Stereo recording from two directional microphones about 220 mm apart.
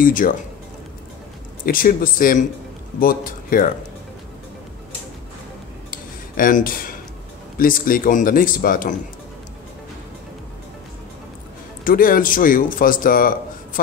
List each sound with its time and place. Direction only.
0.0 s speech: 40° left (ahead or behind)
1.7 s speech: 40° left (ahead or behind)
5.9 s a sound: 40° left (ahead or behind)
7.5 s speech: 40° left (ahead or behind)
11.8 s speech: 40° left (ahead or behind)